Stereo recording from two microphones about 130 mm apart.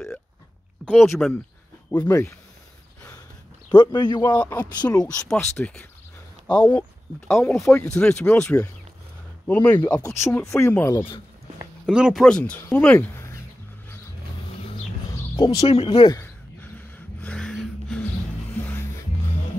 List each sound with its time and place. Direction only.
0.8 s a sound: centre (ahead or behind)
1.2 s speech: 5° left (ahead or behind)
1.9 s speech: 20° left (ahead or behind)
3.7 s a man's voice: 35° left (ahead or behind)
4.4 s speech: 15° left (ahead or behind)
4.7 s speech: 30° left (ahead or behind)
5.0 s speech: 5° left (ahead or behind)
7.5 s speech: 20° left (ahead or behind)
7.8 s speech: 10° left (ahead or behind)
11.8 s speech: 5° right (ahead or behind); by 13.0 s 10° left (ahead or behind)
15.3 s speech: 35° left (ahead or behind)
15.7 s speech: 45° left (ahead or behind)
16.6 s a sound: 10° left (ahead or behind)